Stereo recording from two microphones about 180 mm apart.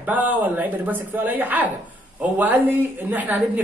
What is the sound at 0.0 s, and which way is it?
Speech, 10° right (ahead or behind).